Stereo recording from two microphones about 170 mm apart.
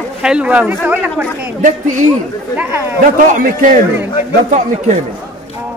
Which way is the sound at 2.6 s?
15° right (ahead or behind).